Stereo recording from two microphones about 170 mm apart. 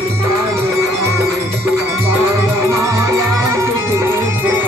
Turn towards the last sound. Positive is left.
turn(degrees=-15)  # may be behind; listen again after turning